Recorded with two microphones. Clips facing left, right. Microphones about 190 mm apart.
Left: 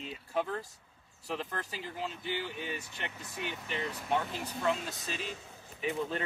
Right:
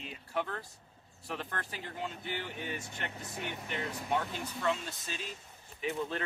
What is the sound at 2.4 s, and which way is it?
Speech, 10° left (ahead or behind).